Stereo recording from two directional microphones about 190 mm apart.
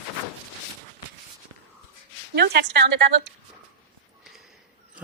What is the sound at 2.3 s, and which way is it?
Speech, 60° right (ahead or behind).